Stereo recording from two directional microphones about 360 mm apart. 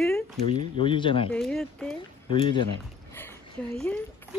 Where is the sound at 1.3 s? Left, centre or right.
Centre.